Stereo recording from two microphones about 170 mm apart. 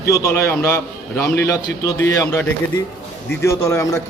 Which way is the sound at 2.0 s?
20° left (ahead or behind).